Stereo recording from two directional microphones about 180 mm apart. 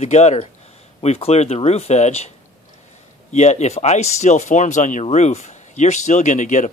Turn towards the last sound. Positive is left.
turn(degrees=45)  # may be behind; listen again after turning